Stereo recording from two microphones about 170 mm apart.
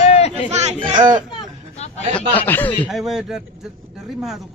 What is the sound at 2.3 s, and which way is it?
Speech, 10° left (ahead or behind).